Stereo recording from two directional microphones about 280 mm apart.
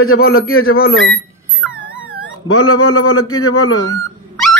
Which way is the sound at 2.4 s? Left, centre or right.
Left.